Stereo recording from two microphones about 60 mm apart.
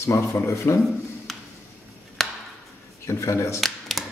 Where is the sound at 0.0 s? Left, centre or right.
Left.